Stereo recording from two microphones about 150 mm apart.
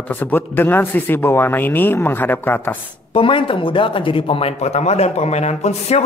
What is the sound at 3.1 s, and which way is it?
Speech, 35° left (ahead or behind).